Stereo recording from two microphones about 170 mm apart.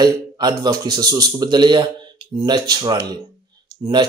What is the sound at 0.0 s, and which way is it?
Speech, 25° right (ahead or behind).